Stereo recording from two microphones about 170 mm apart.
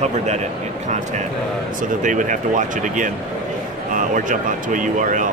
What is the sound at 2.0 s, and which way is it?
Speech, 50° right (ahead or behind).